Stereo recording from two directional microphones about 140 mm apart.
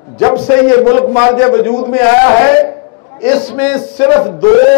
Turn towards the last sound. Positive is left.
turn(degrees=20)  # may be behind; listen again after turning